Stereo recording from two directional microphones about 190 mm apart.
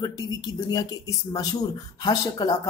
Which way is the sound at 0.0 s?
20° left (ahead or behind).